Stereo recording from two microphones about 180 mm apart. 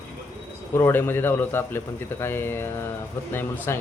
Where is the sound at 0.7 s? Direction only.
15° left (ahead or behind).